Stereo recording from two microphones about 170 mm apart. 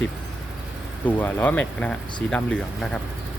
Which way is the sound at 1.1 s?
10° left (ahead or behind).